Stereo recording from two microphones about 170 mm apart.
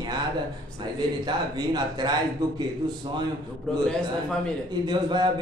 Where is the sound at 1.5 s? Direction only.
25° right (ahead or behind).